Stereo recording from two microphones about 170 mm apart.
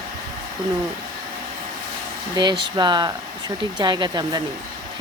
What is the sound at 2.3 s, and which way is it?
Speech, 25° right (ahead or behind).